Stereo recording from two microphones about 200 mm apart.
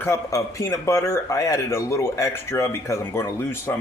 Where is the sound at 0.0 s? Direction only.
15° left (ahead or behind).